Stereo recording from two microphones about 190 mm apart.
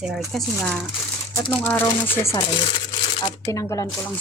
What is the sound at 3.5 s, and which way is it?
Speech, 15° left (ahead or behind).